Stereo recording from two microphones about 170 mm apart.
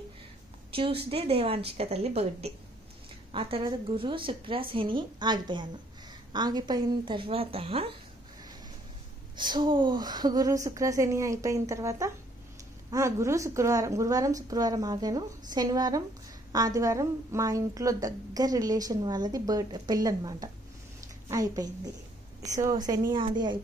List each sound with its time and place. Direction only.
0.7 s a woman's voice: 35° right (ahead or behind)
9.4 s a woman's voice: 25° right (ahead or behind)